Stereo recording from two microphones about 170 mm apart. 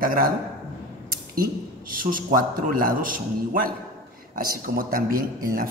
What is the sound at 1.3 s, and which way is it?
Speech, 55° right (ahead or behind).